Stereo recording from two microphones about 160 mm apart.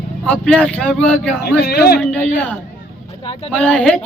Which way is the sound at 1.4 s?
90° left.